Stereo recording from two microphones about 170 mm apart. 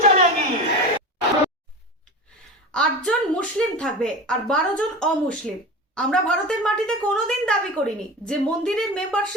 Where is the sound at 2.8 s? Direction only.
5° left (ahead or behind).